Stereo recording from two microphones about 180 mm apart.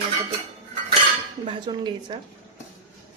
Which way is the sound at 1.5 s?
25° right (ahead or behind).